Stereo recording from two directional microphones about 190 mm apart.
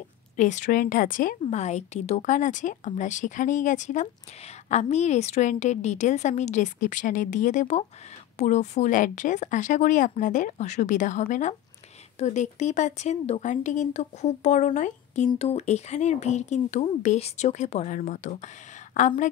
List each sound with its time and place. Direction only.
0.4 s a woman's voice: 40° left (ahead or behind)